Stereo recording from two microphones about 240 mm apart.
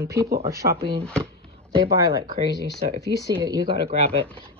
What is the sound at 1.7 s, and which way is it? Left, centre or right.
Speech, centre.